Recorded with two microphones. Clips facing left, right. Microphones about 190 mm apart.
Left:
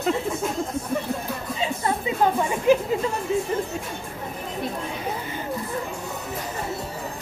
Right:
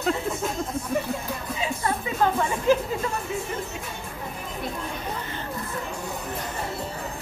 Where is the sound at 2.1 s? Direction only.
15° left (ahead or behind).